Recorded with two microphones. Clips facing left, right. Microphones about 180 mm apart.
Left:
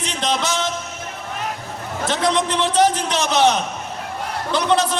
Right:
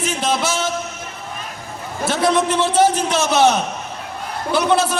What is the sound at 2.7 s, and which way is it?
A man's voice, 10° right (ahead or behind).